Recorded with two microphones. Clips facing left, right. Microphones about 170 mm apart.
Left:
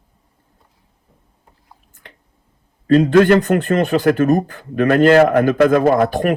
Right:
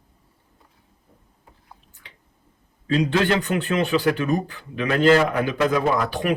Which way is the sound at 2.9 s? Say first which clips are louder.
Left 9 dB; 50° left (ahead or behind).